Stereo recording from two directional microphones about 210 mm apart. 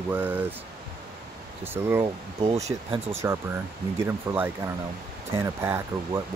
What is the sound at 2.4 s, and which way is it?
Speech, 25° right (ahead or behind).